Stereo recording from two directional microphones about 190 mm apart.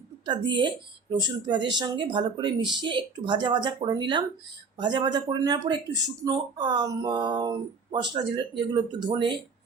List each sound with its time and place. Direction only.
0.3 s speech: 25° right (ahead or behind)